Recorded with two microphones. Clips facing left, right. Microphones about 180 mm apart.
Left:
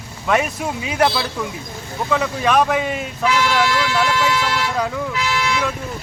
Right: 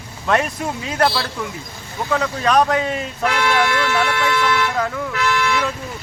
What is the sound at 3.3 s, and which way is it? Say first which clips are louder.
Speech: left 1 dB; 60° right (ahead or behind).